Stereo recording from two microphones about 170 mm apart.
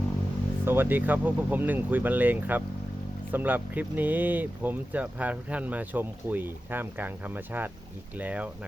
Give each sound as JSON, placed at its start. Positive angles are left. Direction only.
{"t": 0.6, "sound": "speech", "side_deg": -10}